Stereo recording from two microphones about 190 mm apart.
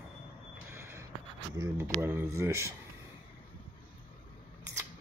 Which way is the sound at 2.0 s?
10° right (ahead or behind).